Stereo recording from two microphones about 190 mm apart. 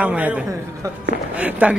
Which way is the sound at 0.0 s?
5° right (ahead or behind).